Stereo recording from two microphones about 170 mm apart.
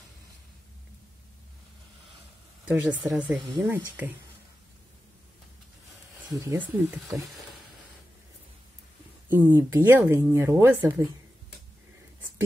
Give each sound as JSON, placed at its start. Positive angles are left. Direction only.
{"t": 2.6, "sound": "speech", "side_deg": -10}
{"t": 6.4, "sound": "speech", "side_deg": -20}
{"t": 9.3, "sound": "speech", "side_deg": -10}